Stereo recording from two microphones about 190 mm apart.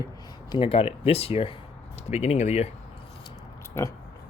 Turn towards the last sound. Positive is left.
turn(degrees=15)  # may be behind; listen again after turning